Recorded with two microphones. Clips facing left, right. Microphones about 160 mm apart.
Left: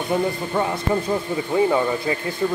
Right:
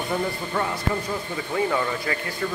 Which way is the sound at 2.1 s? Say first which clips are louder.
Left 4 dB; 20° left (ahead or behind).